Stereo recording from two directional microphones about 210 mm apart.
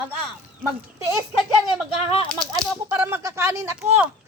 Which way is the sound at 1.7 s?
25° left (ahead or behind).